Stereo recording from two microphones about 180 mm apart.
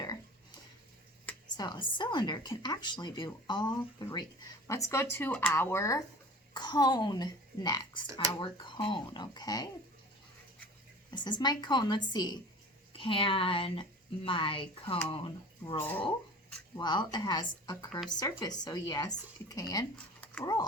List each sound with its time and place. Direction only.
1.5 s speech: 25° left (ahead or behind)
4.7 s speech: 15° left (ahead or behind)
11.1 s speech: 25° left (ahead or behind)
15.8 s speech: 10° left (ahead or behind)
16.7 s speech: 25° left (ahead or behind)